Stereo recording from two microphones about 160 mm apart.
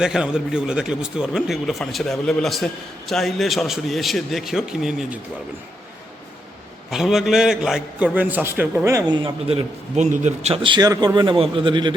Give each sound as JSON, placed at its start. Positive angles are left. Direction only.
{"t": 0.0, "sound": "a man's voice", "side_deg": -5}
{"t": 6.9, "sound": "a man's voice", "side_deg": 0}
{"t": 9.2, "sound": "a man's voice", "side_deg": -35}